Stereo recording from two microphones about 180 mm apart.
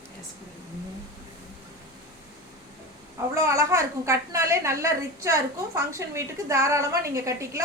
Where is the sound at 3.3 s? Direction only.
15° right (ahead or behind).